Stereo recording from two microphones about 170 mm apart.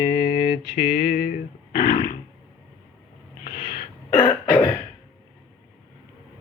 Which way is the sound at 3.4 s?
60° left (ahead or behind).